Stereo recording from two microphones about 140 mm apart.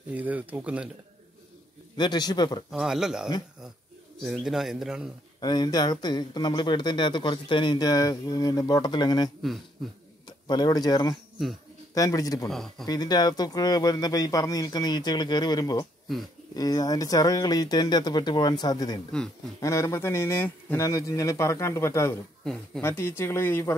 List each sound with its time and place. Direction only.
0.1 s speech: 10° right (ahead or behind)
2.0 s speech: 30° left (ahead or behind)
2.7 s a man's voice: 5° right (ahead or behind)
5.4 s speech: 30° left (ahead or behind)
12.4 s a man's voice: centre (ahead or behind)
12.8 s speech: 30° left (ahead or behind)